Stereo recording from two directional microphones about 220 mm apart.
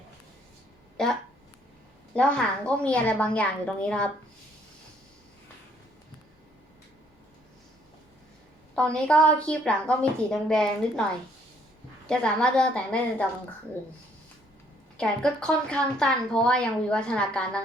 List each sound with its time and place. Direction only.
2.1 s speech: 5° left (ahead or behind)
8.7 s speech: 5° left (ahead or behind)
12.0 s speech: 5° left (ahead or behind)
14.9 s speech: 5° left (ahead or behind)